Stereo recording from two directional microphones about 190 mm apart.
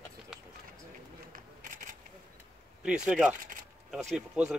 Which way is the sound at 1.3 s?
45° right (ahead or behind).